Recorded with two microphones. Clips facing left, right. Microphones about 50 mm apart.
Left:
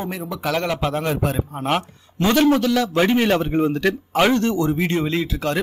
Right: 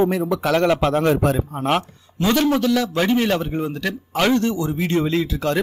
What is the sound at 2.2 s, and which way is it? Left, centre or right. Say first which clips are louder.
A man's voice: left 1 dB; left.